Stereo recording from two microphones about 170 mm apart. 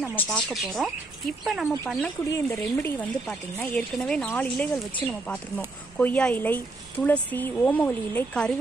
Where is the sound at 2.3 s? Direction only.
15° left (ahead or behind).